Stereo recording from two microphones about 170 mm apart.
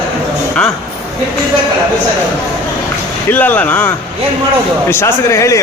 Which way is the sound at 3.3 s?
10° left (ahead or behind).